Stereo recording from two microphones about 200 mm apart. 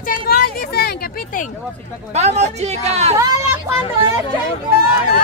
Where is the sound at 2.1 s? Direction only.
35° right (ahead or behind).